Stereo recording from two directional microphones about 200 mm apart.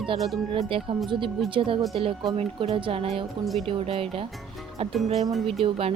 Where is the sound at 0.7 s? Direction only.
25° right (ahead or behind).